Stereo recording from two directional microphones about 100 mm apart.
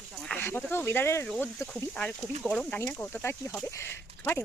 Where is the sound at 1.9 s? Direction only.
10° left (ahead or behind).